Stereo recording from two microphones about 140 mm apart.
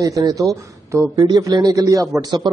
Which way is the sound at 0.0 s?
25° right (ahead or behind).